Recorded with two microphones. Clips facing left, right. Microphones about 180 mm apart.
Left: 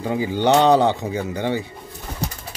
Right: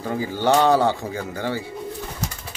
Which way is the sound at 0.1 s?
20° left (ahead or behind).